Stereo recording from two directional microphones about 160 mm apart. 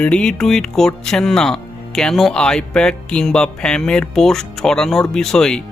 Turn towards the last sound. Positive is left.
turn(degrees=5)  # may be behind; listen again after turning